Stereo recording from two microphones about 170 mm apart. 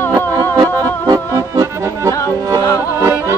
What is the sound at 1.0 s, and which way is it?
Accordion, 20° right (ahead or behind).